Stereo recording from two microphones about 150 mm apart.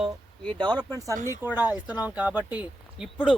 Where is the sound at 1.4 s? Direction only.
10° right (ahead or behind).